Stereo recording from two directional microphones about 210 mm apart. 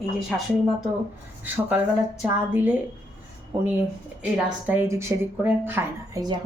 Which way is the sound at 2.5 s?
10° right (ahead or behind).